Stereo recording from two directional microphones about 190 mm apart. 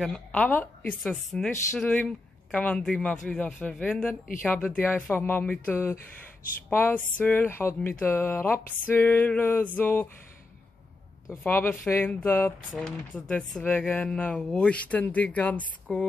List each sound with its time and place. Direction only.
0.0 s speech: 5° left (ahead or behind)
11.4 s speech: 10° left (ahead or behind)